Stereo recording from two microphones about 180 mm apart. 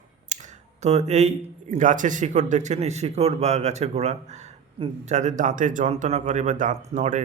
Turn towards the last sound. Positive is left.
turn(degrees=-45)  # may be behind; listen again after turning